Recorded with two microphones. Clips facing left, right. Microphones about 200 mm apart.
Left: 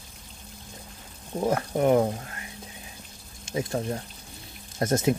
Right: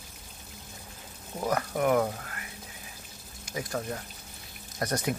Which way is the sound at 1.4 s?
25° left (ahead or behind).